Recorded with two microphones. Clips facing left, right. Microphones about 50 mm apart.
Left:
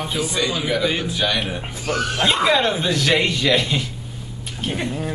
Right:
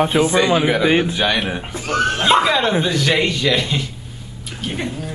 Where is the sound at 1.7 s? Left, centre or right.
Right.